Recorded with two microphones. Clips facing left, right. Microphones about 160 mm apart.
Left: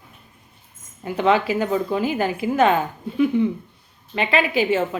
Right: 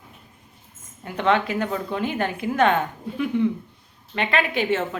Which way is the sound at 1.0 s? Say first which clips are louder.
Left 3 dB; 5° left (ahead or behind).